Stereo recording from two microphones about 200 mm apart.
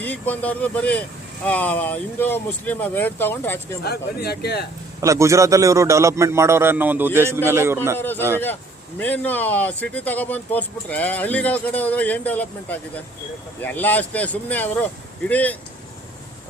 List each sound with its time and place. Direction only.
0.0 s speech: 10° left (ahead or behind)
3.8 s a man's voice: 55° left (ahead or behind)
4.9 s a man's voice: 15° right (ahead or behind)
7.9 s speech: 10° left (ahead or behind)